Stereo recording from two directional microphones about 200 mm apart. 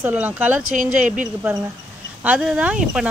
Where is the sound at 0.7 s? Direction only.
40° right (ahead or behind).